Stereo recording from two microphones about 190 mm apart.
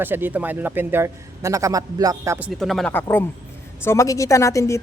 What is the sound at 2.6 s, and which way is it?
A woman's voice, centre (ahead or behind).